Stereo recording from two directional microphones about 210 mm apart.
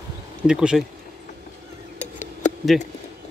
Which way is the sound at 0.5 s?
5° right (ahead or behind).